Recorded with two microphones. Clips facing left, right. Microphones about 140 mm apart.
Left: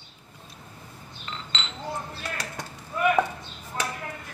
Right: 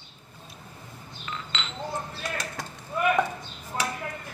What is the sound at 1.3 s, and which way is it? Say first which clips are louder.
Chink: right 1 dB; 30° left (ahead or behind).